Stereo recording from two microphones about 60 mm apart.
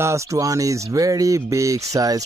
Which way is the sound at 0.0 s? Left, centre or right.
Right.